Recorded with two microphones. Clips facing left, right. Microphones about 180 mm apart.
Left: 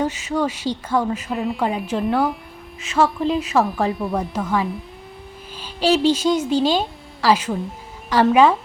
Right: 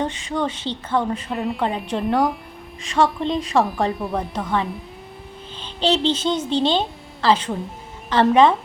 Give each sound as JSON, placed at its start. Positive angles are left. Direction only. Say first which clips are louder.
{"t": 0.0, "sound": "a woman's voice", "louder": "left 2 dB", "side_deg": 5}